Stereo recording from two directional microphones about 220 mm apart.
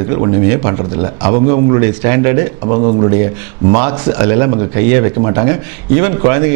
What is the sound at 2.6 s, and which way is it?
Speech, 35° right (ahead or behind).